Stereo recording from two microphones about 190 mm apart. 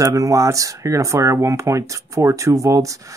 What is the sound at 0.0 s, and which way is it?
Speech, 20° right (ahead or behind).